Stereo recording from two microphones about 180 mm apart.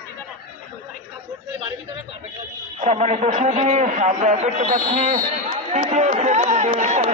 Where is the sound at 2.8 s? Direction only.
40° right (ahead or behind).